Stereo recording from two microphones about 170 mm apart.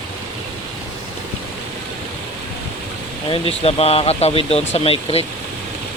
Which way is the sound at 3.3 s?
35° left (ahead or behind).